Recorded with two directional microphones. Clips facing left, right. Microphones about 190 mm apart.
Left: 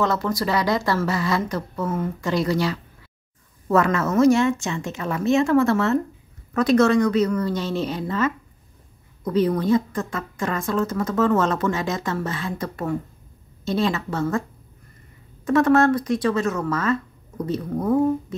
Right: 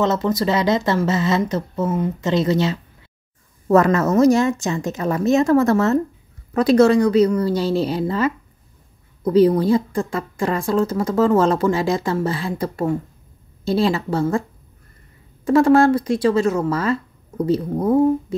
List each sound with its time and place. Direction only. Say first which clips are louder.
0.0 s speech: right 4 dB; 20° right (ahead or behind)
3.6 s speech: right 5 dB; 40° right (ahead or behind)
15.4 s speech: right 4 dB; 30° right (ahead or behind)